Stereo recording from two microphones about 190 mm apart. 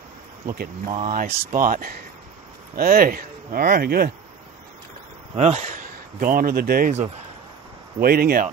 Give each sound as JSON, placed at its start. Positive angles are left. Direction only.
{"t": 0.5, "sound": "speech", "side_deg": -40}
{"t": 1.2, "sound": "speech", "side_deg": -50}
{"t": 5.3, "sound": "speech", "side_deg": -35}
{"t": 8.0, "sound": "speech", "side_deg": -50}